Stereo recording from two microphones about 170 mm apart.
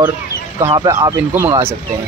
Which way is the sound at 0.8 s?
20° right (ahead or behind).